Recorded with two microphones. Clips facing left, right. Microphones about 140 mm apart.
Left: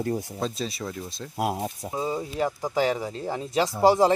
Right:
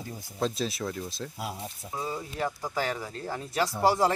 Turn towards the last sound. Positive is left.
turn(degrees=20)  # may be behind; listen again after turning